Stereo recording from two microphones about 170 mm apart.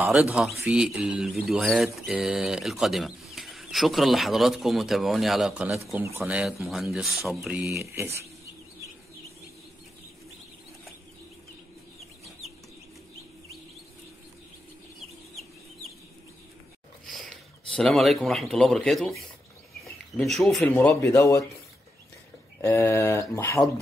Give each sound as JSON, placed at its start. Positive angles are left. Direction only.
{"t": 0.1, "sound": "speech", "side_deg": -5}
{"t": 7.8, "sound": "speech", "side_deg": -15}
{"t": 17.1, "sound": "a man's voice", "side_deg": 0}
{"t": 20.2, "sound": "speech", "side_deg": 0}
{"t": 22.6, "sound": "speech", "side_deg": 15}